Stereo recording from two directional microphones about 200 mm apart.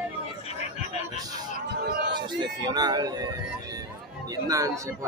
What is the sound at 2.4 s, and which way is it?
Speech, 20° right (ahead or behind).